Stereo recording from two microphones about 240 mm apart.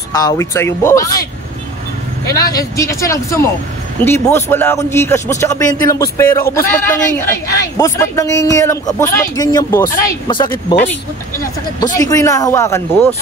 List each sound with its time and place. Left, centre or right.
0.1 s speech: centre
2.2 s speech: centre
11.8 s speech: centre